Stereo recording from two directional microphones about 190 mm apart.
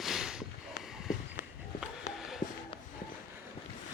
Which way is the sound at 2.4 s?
45° left (ahead or behind).